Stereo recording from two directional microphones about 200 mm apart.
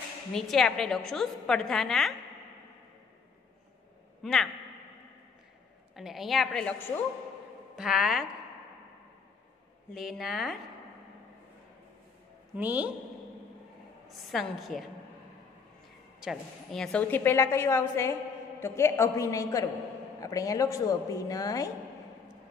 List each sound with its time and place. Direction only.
0.3 s a woman's voice: centre (ahead or behind)
4.2 s a man's voice: centre (ahead or behind)
5.9 s a woman's voice: centre (ahead or behind)
7.7 s a woman's voice: 5° right (ahead or behind)
9.9 s a woman's voice: centre (ahead or behind)
12.5 s a woman's voice: 10° right (ahead or behind)
14.1 s a woman's voice: centre (ahead or behind)
16.2 s a woman's voice: centre (ahead or behind); by 21.6 s 15° left (ahead or behind)